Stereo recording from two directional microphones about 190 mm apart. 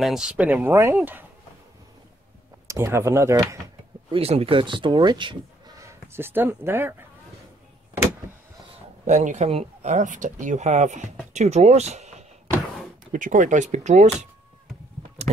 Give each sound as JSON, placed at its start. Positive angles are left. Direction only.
{"t": 0.0, "sound": "speech", "side_deg": -5}
{"t": 2.7, "sound": "speech", "side_deg": -15}
{"t": 4.1, "sound": "speech", "side_deg": -30}
{"t": 9.0, "sound": "speech", "side_deg": -40}
{"t": 15.2, "sound": "a sound", "side_deg": -35}